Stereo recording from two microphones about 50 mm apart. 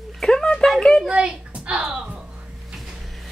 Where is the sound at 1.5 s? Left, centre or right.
Right.